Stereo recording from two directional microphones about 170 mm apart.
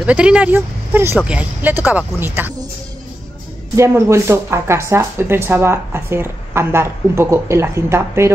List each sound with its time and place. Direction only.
0.0 s speech: 5° right (ahead or behind)
3.7 s speech: 15° right (ahead or behind)